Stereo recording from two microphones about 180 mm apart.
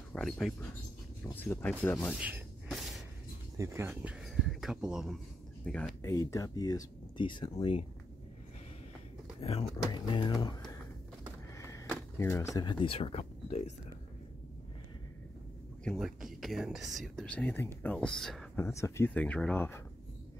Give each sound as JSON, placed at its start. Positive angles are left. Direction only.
{"t": 0.1, "sound": "speech", "side_deg": 0}
{"t": 1.2, "sound": "speech", "side_deg": 10}
{"t": 2.1, "sound": "music", "side_deg": -10}
{"t": 3.5, "sound": "speech", "side_deg": -15}
{"t": 6.0, "sound": "speech", "side_deg": 20}
{"t": 9.4, "sound": "speech", "side_deg": 35}
{"t": 11.5, "sound": "a sound", "side_deg": 15}
{"t": 12.2, "sound": "speech", "side_deg": 15}
{"t": 15.8, "sound": "speech", "side_deg": 0}
{"t": 18.6, "sound": "speech", "side_deg": 15}